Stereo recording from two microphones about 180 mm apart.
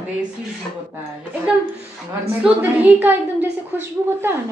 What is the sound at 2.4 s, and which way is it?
A woman's voice, 10° right (ahead or behind).